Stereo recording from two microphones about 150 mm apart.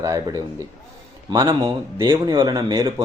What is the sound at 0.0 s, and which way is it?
Speech, 25° right (ahead or behind).